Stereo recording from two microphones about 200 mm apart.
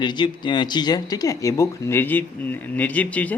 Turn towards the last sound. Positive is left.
turn(degrees=10)  # may be behind; listen again after turning